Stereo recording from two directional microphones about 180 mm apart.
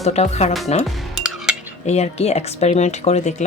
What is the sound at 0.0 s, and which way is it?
Speech, 35° left (ahead or behind).